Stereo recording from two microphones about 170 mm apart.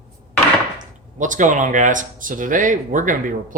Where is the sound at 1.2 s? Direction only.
50° right (ahead or behind).